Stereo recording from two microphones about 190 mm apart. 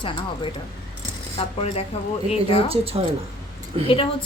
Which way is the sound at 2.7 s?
30° right (ahead or behind).